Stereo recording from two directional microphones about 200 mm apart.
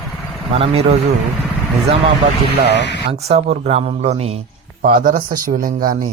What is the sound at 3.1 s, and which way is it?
Speech, 30° right (ahead or behind).